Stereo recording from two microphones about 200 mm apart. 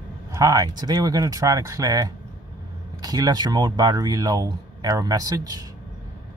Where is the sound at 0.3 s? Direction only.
15° right (ahead or behind).